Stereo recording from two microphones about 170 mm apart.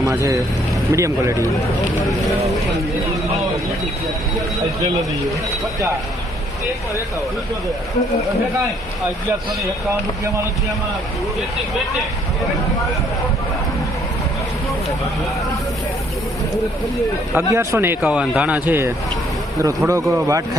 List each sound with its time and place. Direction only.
0.0 s speech: 15° right (ahead or behind)
17.3 s speech: 15° right (ahead or behind)